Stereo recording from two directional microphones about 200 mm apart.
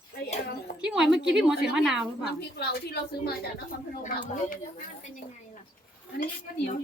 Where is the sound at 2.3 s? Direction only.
55° left (ahead or behind).